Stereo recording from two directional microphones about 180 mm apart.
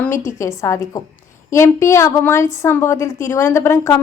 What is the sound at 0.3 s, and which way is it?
A woman's voice, 15° left (ahead or behind).